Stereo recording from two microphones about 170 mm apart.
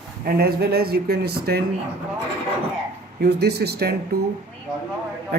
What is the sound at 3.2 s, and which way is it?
Speech, 75° right (ahead or behind).